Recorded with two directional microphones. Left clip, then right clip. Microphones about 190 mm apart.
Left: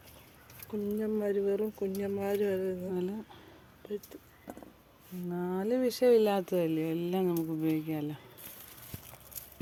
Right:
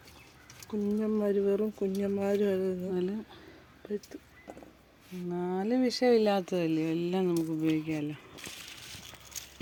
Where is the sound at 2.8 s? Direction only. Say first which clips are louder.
Right 2 dB; 10° right (ahead or behind).